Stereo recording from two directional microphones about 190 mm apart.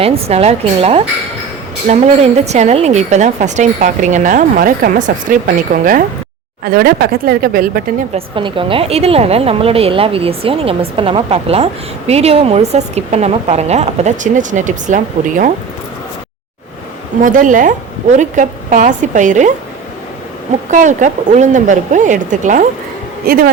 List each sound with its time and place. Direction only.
0.0 s a woman's voice: 30° right (ahead or behind); by 7.6 s 55° right (ahead or behind)
8.1 s a woman's voice: 25° right (ahead or behind)
17.2 s a woman's voice: 45° right (ahead or behind)
20.7 s a woman's voice: 40° right (ahead or behind)